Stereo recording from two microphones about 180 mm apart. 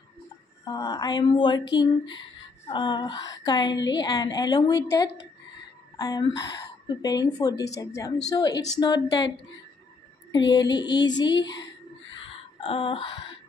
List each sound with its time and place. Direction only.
0.7 s a woman's voice: 20° left (ahead or behind)
5.9 s a woman's voice: 20° left (ahead or behind)
10.3 s a woman's voice: 25° left (ahead or behind)
11.5 s a sound: 90° left
12.5 s a woman's voice: 30° left (ahead or behind)